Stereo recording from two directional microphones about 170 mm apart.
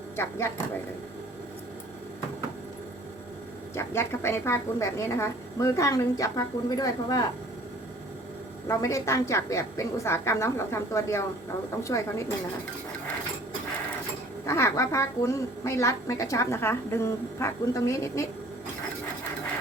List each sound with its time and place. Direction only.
3.8 s a woman's voice: 15° left (ahead or behind)
8.6 s a woman's voice: 20° left (ahead or behind)
14.4 s a woman's voice: 15° left (ahead or behind)